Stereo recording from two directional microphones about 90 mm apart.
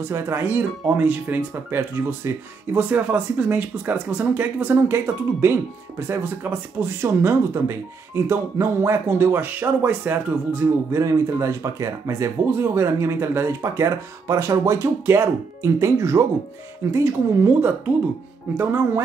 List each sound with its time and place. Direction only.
0.0 s speech: 25° right (ahead or behind)
10.9 s speech: 35° right (ahead or behind)